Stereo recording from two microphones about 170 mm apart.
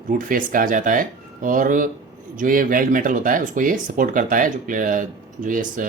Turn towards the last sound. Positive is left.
turn(degrees=-50)  # may be behind; listen again after turning